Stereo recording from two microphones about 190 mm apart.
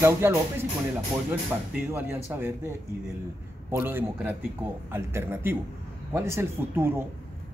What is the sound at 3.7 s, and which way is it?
Speech, 10° right (ahead or behind).